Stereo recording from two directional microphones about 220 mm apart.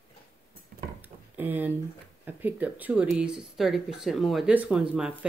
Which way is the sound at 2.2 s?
10° right (ahead or behind).